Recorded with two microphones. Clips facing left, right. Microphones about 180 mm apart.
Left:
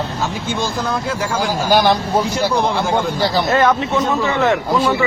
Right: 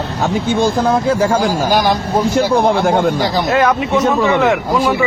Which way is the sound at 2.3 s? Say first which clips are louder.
Right 5 dB; 55° right (ahead or behind).